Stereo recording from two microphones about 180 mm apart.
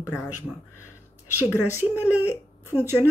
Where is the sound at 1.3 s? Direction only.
10° right (ahead or behind).